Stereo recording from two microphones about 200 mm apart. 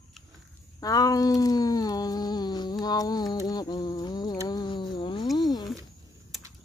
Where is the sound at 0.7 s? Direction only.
20° left (ahead or behind).